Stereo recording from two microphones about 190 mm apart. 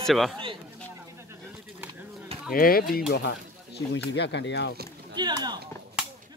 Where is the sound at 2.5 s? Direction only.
50° left (ahead or behind).